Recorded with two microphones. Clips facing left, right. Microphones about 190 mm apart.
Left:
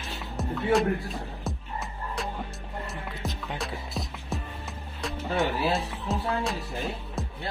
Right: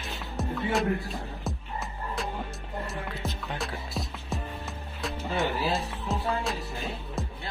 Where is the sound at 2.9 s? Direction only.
Centre (ahead or behind).